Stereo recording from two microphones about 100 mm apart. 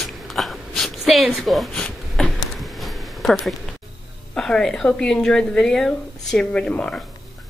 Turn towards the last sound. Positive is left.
turn(degrees=10)  # may be behind; listen again after turning